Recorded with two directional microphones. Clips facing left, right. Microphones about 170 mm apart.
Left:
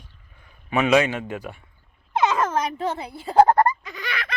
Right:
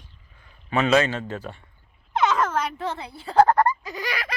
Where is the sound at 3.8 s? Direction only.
40° right (ahead or behind).